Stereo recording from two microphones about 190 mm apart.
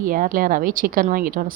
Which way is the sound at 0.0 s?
45° right (ahead or behind).